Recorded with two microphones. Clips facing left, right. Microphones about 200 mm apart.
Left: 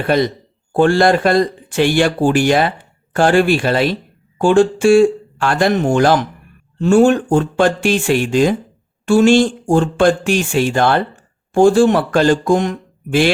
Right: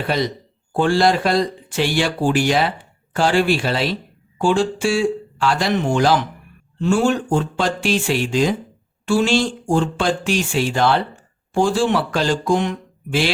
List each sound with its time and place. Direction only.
0.7 s speech: 55° left (ahead or behind)